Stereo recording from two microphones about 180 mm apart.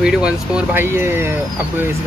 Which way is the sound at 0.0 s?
5° right (ahead or behind).